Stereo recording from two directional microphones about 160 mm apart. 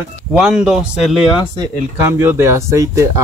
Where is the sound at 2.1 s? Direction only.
15° right (ahead or behind).